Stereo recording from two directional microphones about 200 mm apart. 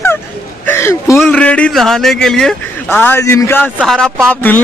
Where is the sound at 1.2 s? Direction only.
5° left (ahead or behind).